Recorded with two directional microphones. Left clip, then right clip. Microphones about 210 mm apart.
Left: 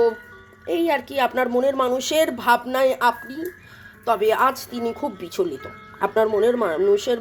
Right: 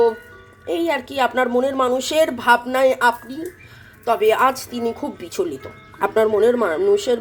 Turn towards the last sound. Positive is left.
turn(degrees=10)  # may be behind; listen again after turning